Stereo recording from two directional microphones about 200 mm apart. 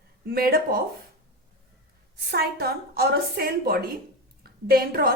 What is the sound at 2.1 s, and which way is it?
A woman's voice, 50° right (ahead or behind).